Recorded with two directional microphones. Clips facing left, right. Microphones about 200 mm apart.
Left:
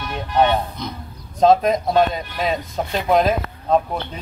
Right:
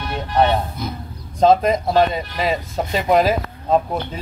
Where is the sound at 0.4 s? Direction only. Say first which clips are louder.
Even; 5° right (ahead or behind).